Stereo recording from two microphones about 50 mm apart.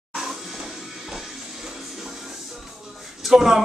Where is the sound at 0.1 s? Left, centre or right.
Centre.